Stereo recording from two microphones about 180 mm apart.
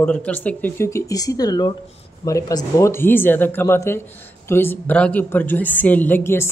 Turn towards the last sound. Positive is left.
turn(degrees=10)  # may be behind; listen again after turning